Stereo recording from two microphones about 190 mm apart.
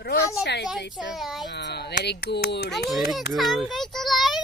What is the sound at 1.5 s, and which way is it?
Speech, 60° left (ahead or behind).